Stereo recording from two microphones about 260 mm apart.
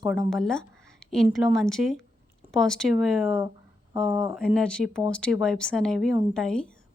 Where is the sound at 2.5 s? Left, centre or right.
Centre.